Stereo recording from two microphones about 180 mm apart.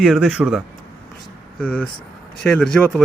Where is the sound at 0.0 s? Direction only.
5° right (ahead or behind).